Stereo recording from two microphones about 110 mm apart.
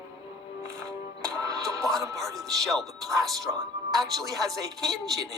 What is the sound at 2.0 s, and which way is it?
Speech, 30° right (ahead or behind).